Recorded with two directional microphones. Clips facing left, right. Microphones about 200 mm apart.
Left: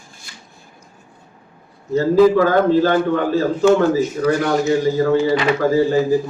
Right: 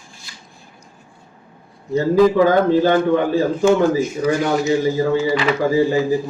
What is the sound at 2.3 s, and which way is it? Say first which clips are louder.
A man's voice: even; 15° right (ahead or behind).